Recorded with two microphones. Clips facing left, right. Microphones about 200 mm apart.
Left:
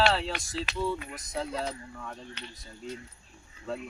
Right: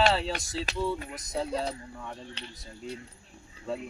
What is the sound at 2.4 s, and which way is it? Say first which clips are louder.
Music: even; 30° right (ahead or behind).